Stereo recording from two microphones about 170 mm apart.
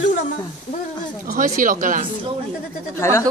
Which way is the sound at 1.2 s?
55° right (ahead or behind).